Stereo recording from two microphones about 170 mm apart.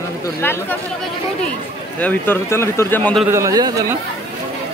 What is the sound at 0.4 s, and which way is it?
Speech, 15° left (ahead or behind).